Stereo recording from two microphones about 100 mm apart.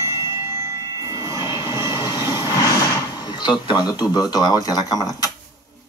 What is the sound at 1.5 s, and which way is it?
Vehicle, 50° left (ahead or behind).